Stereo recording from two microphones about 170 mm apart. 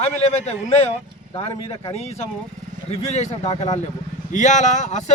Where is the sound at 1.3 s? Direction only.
35° left (ahead or behind).